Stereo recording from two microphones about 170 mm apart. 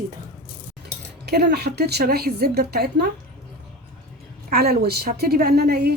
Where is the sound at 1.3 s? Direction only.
70° right (ahead or behind).